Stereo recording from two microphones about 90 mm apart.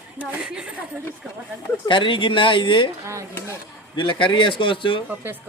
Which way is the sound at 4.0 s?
65° left (ahead or behind).